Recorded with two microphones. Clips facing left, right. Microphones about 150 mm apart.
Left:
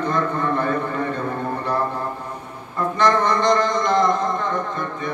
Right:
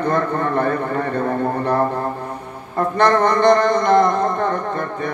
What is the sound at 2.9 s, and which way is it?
A man's voice, 55° right (ahead or behind).